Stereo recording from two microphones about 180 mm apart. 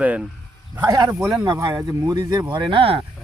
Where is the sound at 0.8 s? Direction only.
20° right (ahead or behind).